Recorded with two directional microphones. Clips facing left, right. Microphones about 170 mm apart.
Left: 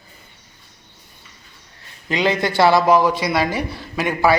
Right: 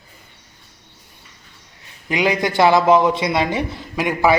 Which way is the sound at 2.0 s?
15° right (ahead or behind).